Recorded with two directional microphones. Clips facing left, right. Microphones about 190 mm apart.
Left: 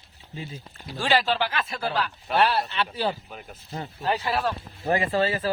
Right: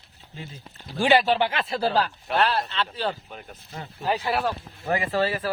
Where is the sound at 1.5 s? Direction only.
30° right (ahead or behind).